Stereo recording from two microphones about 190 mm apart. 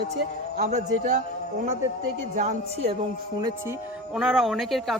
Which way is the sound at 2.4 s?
30° right (ahead or behind).